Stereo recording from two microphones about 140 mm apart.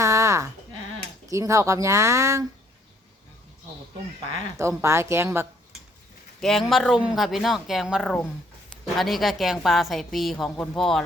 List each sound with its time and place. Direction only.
0.0 s sheep: 20° right (ahead or behind)
1.3 s speech: 20° right (ahead or behind)
4.5 s speech: 20° right (ahead or behind)
6.4 s a woman's voice: centre (ahead or behind)